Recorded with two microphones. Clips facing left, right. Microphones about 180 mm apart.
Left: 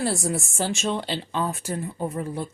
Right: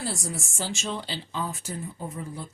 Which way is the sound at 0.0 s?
60° left (ahead or behind).